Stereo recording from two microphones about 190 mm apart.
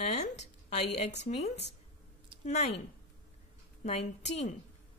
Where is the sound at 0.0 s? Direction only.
35° left (ahead or behind).